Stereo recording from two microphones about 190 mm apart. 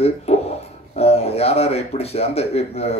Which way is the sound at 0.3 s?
35° left (ahead or behind).